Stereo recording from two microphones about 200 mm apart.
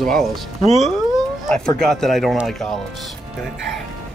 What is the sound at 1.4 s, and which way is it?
Speech, 5° left (ahead or behind).